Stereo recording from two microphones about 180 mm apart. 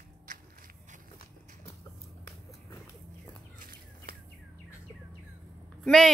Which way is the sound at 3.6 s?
50° right (ahead or behind).